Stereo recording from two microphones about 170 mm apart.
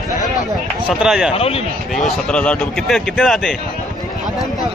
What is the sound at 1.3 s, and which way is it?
Speech, 35° left (ahead or behind).